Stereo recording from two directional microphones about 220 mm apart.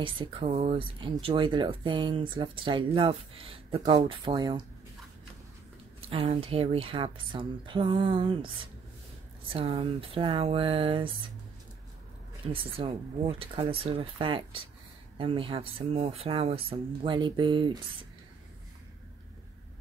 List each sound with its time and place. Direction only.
0.0 s speech: 25° right (ahead or behind)
5.9 s speech: 25° right (ahead or behind)
9.5 s speech: 25° right (ahead or behind)
12.4 s speech: 25° right (ahead or behind)